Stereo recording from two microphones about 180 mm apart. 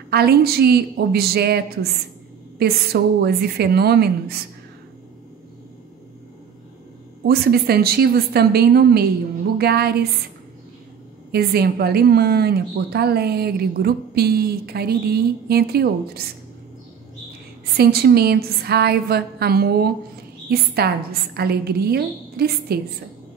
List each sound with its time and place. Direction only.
0.1 s a woman's voice: 60° right (ahead or behind)
7.2 s a woman's voice: 60° right (ahead or behind)
11.3 s a woman's voice: 60° right (ahead or behind)
17.7 s a woman's voice: 60° right (ahead or behind)